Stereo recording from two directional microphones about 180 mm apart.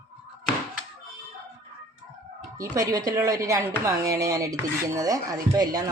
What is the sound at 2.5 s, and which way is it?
Speech, 20° right (ahead or behind).